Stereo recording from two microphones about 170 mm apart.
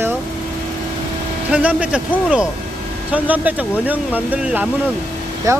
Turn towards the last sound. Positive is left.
turn(degrees=-20)  # may be behind; listen again after turning